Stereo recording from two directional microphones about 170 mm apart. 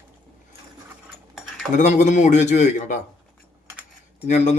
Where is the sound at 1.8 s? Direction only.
45° left (ahead or behind).